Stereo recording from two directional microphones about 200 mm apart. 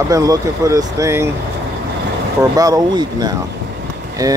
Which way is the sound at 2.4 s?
15° right (ahead or behind).